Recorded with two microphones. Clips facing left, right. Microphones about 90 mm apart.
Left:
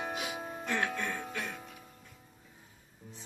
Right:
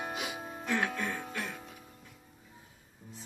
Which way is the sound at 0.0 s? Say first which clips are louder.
Left 1 dB; centre (ahead or behind).